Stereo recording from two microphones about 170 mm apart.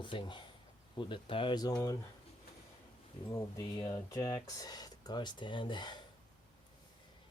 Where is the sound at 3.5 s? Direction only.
25° left (ahead or behind).